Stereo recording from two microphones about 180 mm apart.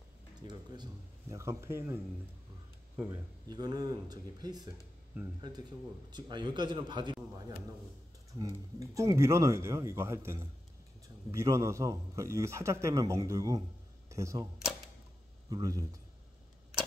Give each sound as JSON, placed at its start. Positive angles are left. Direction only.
{"t": 0.4, "sound": "a man's voice", "side_deg": -25}
{"t": 3.4, "sound": "a man's voice", "side_deg": -20}
{"t": 15.5, "sound": "a man's voice", "side_deg": -20}